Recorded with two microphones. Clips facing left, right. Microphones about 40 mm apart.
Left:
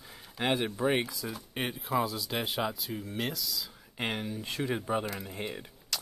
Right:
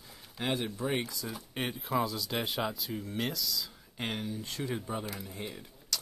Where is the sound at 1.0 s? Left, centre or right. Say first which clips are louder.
Left 1 dB; centre.